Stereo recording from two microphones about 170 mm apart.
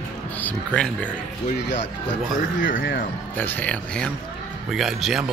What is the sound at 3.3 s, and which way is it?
Speech, 10° left (ahead or behind).